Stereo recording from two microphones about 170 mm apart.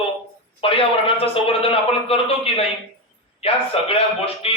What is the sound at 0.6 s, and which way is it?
A man's voice, 35° left (ahead or behind).